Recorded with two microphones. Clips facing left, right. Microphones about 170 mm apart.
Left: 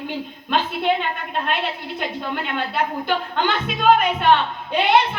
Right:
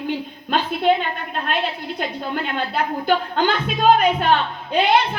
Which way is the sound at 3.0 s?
40° right (ahead or behind).